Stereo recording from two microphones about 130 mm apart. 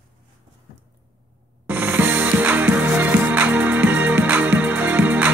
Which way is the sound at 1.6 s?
15° right (ahead or behind).